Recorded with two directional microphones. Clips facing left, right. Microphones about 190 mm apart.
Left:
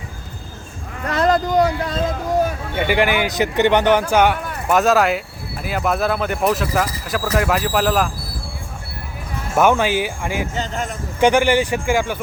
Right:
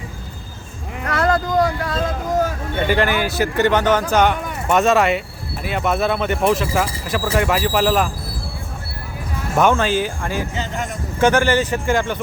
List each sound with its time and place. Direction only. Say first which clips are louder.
1.1 s a sound: left 2 dB; 20° left (ahead or behind)
2.7 s a man's voice: even; 15° left (ahead or behind)
9.6 s a man's voice: left 1 dB; 10° left (ahead or behind)